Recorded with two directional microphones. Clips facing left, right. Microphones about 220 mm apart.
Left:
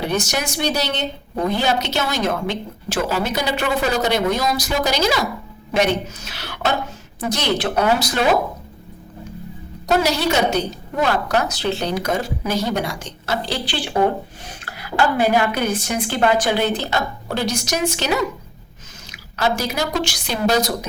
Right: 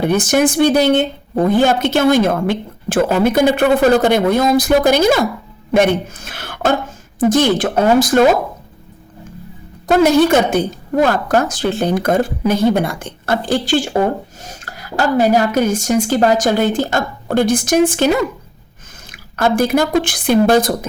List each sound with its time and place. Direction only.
0.0 s a woman's voice: 50° right (ahead or behind)
9.8 s a woman's voice: 50° right (ahead or behind)